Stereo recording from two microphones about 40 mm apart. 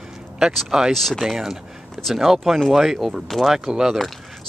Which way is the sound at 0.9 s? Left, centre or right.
Centre.